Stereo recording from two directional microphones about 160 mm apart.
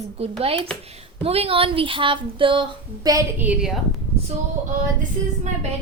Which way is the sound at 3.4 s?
5° right (ahead or behind).